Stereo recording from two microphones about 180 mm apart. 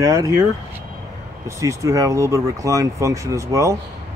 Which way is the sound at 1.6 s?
15° right (ahead or behind).